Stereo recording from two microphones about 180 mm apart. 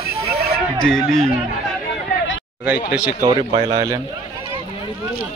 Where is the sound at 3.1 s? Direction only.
15° right (ahead or behind).